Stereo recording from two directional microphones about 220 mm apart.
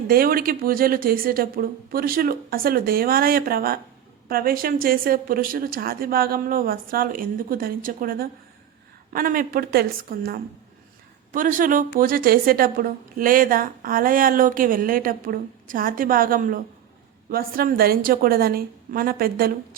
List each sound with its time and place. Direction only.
0.1 s a woman's voice: 40° right (ahead or behind)